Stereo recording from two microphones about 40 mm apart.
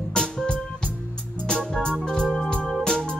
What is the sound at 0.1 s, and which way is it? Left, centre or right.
Music, centre.